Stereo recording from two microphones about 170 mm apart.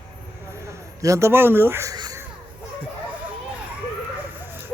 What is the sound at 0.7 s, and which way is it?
Speech, 15° right (ahead or behind).